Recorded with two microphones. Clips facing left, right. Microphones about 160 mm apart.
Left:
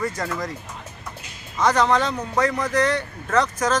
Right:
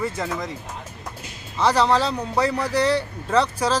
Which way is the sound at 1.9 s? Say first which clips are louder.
Even; 30° right (ahead or behind).